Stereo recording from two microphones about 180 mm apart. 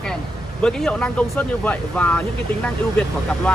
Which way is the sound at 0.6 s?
5° left (ahead or behind).